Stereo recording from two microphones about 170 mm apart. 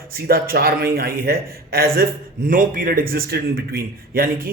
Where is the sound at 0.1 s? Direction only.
60° right (ahead or behind).